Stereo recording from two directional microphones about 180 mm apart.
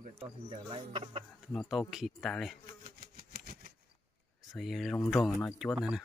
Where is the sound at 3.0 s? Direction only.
55° right (ahead or behind).